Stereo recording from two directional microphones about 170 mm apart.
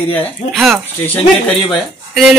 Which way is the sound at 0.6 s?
Centre (ahead or behind).